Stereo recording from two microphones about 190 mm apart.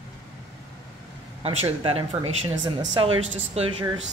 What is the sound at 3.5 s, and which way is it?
Speech, 30° right (ahead or behind).